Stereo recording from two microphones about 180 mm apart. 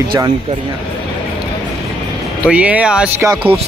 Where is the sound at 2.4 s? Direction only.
5° right (ahead or behind).